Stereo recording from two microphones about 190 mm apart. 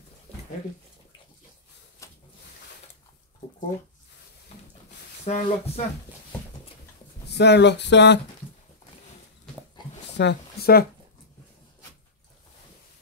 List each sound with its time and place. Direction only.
2.0 s a sound: 15° left (ahead or behind)
5.2 s speech: 35° left (ahead or behind)
7.2 s speech: 60° left (ahead or behind)
10.1 s speech: 60° left (ahead or behind)